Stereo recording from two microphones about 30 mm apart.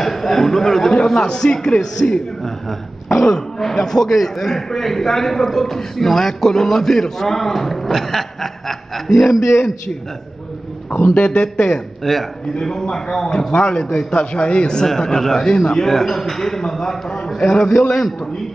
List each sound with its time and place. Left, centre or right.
0.0 s a man's voice: centre
1.0 s a man's voice: left; by 9.4 s centre
11.2 s a man's voice: left
12.0 s a man's voice: centre
12.5 s a man's voice: left
13.5 s a man's voice: left
15.9 s a man's voice: centre